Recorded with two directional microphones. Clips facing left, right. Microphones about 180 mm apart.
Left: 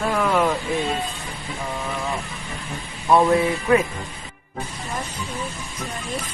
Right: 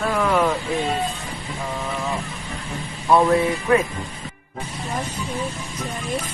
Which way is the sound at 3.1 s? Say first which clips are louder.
Even; 5° left (ahead or behind).